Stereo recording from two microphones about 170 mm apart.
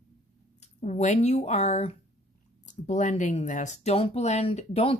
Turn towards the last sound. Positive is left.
turn(degrees=35)  # may be behind; listen again after turning